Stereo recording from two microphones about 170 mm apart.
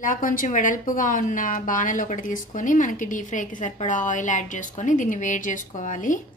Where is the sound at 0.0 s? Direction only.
50° left (ahead or behind).